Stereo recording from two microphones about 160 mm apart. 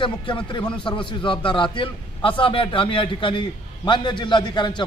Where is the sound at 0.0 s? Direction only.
30° left (ahead or behind).